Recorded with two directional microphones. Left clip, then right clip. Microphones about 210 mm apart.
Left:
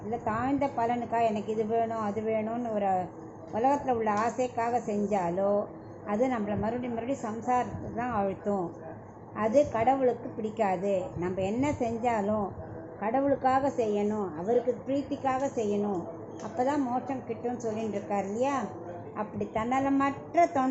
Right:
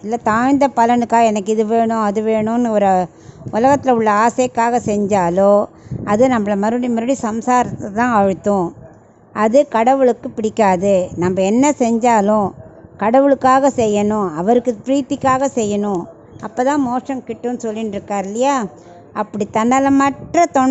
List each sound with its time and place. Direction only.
0.1 s a woman's voice: 55° right (ahead or behind)